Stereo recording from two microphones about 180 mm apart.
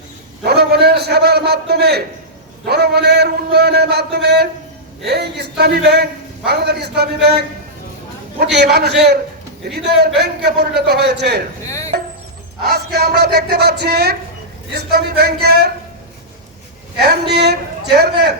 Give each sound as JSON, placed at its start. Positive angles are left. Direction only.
{"t": 0.4, "sound": "a sound", "side_deg": -65}
{"t": 2.6, "sound": "a man's voice", "side_deg": -65}
{"t": 8.5, "sound": "a man's voice", "side_deg": -65}
{"t": 11.6, "sound": "music", "side_deg": 15}
{"t": 12.6, "sound": "a man's voice", "side_deg": -60}
{"t": 17.0, "sound": "a man's voice", "side_deg": -60}